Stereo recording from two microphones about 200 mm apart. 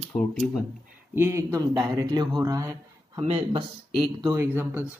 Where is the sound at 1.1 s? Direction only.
10° right (ahead or behind).